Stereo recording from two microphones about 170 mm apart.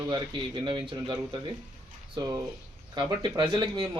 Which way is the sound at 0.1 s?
30° right (ahead or behind).